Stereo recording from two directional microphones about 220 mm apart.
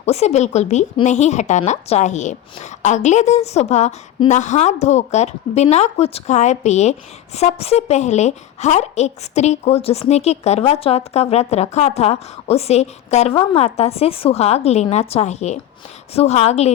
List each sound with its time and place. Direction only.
0.0 s a woman's voice: 30° left (ahead or behind)